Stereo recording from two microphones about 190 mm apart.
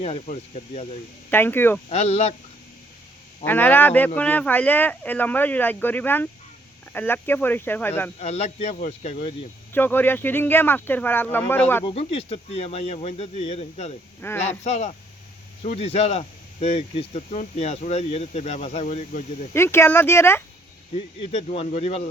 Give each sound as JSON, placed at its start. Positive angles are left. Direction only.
{"t": 0.0, "sound": "speech", "side_deg": 35}
{"t": 1.3, "sound": "speech", "side_deg": 10}
{"t": 1.9, "sound": "speech", "side_deg": 35}
{"t": 3.4, "sound": "speech", "side_deg": 10}
{"t": 8.2, "sound": "speech", "side_deg": 35}
{"t": 9.7, "sound": "speech", "side_deg": 10}
{"t": 11.9, "sound": "speech", "side_deg": 30}
{"t": 14.2, "sound": "speech", "side_deg": 10}
{"t": 14.6, "sound": "speech", "side_deg": 35}
{"t": 19.5, "sound": "speech", "side_deg": 15}
{"t": 20.9, "sound": "speech", "side_deg": 35}